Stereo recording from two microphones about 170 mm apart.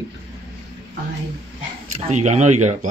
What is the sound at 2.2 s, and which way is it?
Speech, 45° right (ahead or behind).